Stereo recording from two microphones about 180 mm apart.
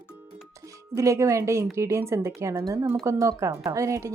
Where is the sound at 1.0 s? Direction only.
15° right (ahead or behind).